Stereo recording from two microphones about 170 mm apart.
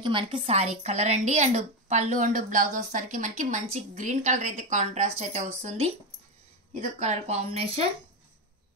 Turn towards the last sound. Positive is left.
turn(degrees=-40)  # may be behind; listen again after turning